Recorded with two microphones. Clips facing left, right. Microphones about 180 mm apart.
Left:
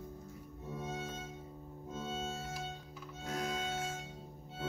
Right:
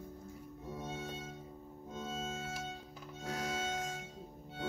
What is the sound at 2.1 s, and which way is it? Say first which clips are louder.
Music: even; 35° left (ahead or behind).